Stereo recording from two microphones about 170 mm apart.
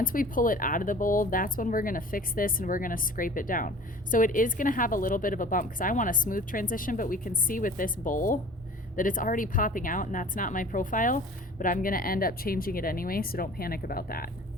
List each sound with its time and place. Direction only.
0.0 s speech: 55° left (ahead or behind)